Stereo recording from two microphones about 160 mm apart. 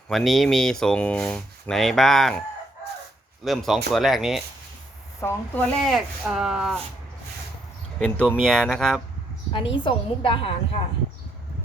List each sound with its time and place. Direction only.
0.1 s speech: centre (ahead or behind)
3.4 s speech: centre (ahead or behind)
5.2 s speech: 15° left (ahead or behind)
5.8 s speech: centre (ahead or behind)
7.9 s speech: 5° left (ahead or behind)
9.5 s a woman's voice: 30° left (ahead or behind)